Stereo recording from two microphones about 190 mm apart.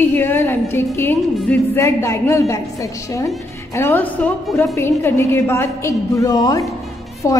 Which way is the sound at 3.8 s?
10° left (ahead or behind).